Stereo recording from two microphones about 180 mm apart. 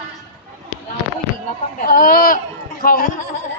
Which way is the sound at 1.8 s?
50° left (ahead or behind).